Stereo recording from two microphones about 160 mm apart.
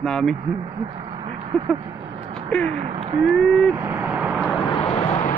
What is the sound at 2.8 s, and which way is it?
Speech, 40° right (ahead or behind).